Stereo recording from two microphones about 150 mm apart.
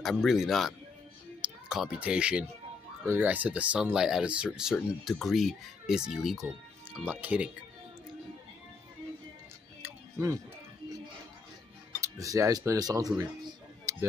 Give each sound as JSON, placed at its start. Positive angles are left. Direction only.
{"t": 0.0, "sound": "speech", "side_deg": 0}
{"t": 9.8, "sound": "music", "side_deg": -15}
{"t": 12.0, "sound": "speech", "side_deg": -20}
{"t": 13.2, "sound": "music", "side_deg": -25}